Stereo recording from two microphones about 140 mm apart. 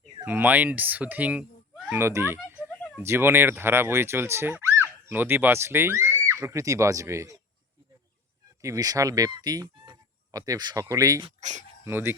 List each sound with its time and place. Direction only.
0.3 s speech: 10° right (ahead or behind)
2.0 s speech: 15° right (ahead or behind)
8.6 s speech: 25° right (ahead or behind)
11.3 s speech: 60° right (ahead or behind)
11.9 s speech: 15° right (ahead or behind)